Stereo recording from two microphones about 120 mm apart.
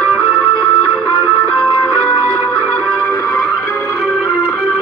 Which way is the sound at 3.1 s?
25° left (ahead or behind).